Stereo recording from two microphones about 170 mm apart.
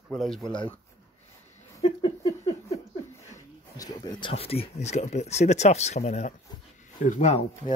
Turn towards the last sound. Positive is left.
turn(degrees=45)  # may be behind; listen again after turning